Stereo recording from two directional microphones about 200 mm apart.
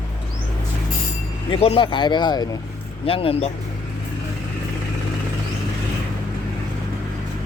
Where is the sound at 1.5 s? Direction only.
30° left (ahead or behind).